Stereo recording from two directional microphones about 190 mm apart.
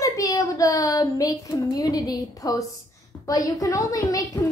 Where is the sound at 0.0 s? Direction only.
15° left (ahead or behind).